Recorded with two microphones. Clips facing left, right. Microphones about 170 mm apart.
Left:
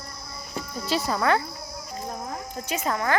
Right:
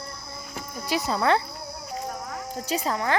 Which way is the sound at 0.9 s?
20° right (ahead or behind).